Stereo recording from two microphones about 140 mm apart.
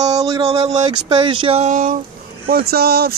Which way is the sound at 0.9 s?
30° right (ahead or behind).